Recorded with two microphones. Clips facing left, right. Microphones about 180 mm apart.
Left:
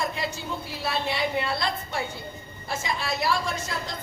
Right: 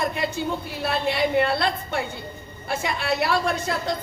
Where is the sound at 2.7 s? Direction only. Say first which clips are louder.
Right 4 dB; 60° right (ahead or behind).